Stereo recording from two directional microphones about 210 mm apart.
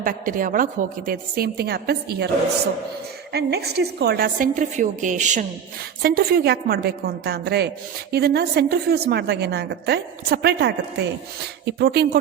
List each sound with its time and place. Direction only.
0.0 s a woman's voice: 40° right (ahead or behind)
3.3 s a woman's voice: 50° right (ahead or behind)
6.0 s a woman's voice: 50° right (ahead or behind)